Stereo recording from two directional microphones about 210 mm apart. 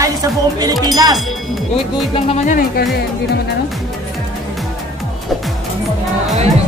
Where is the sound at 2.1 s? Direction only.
30° left (ahead or behind).